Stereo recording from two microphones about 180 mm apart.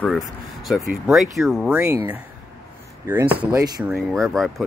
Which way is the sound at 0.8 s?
Centre (ahead or behind).